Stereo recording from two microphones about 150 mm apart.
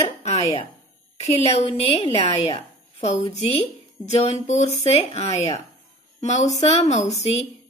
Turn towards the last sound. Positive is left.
turn(degrees=45)  # may be behind; listen again after turning